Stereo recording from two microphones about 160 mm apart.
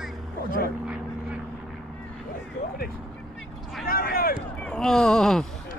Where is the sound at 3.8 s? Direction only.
65° left (ahead or behind).